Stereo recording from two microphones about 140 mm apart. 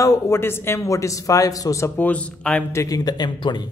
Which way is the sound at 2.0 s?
10° left (ahead or behind).